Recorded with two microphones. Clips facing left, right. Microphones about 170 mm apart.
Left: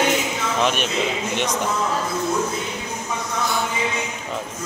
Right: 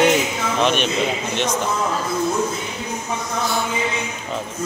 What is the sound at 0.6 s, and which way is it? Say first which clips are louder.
Speech: right 3 dB; 5° left (ahead or behind).